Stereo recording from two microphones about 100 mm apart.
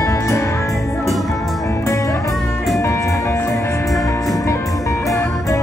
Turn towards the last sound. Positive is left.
turn(degrees=30)  # may be behind; listen again after turning